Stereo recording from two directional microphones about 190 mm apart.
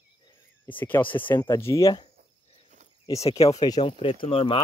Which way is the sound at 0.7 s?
10° left (ahead or behind).